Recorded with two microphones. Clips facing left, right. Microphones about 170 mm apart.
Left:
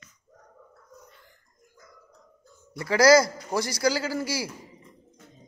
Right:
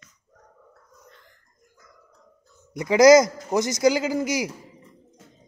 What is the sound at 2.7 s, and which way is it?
A man's voice, 20° right (ahead or behind).